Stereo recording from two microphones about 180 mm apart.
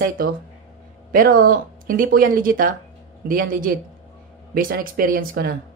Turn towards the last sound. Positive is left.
turn(degrees=-55)  # may be behind; listen again after turning